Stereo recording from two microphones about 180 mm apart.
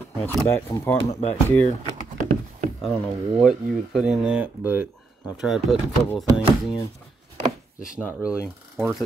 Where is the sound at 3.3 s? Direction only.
5° right (ahead or behind).